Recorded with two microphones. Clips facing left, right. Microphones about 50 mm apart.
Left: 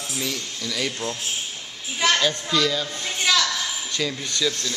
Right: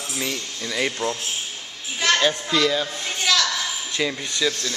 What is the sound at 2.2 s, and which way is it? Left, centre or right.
Speech, centre.